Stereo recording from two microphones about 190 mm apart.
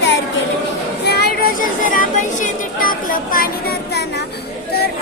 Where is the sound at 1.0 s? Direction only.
55° left (ahead or behind).